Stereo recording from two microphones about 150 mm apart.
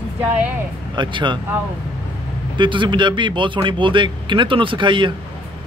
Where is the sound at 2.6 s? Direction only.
30° right (ahead or behind).